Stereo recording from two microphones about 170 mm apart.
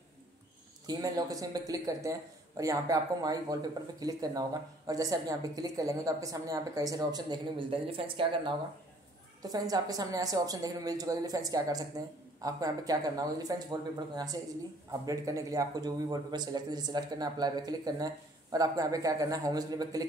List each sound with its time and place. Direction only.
0.8 s a man's voice: 20° right (ahead or behind)